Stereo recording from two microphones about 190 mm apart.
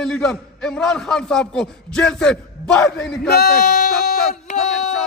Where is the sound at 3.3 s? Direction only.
55° left (ahead or behind).